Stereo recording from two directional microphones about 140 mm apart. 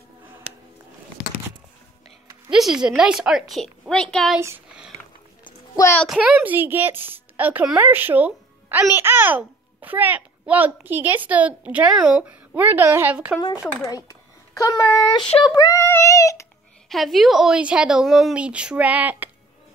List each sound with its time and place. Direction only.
2.5 s a woman's voice: 5° right (ahead or behind)
6.0 s a woman's voice: 5° right (ahead or behind)
13.4 s speech: 30° left (ahead or behind)
16.9 s a woman's voice: centre (ahead or behind)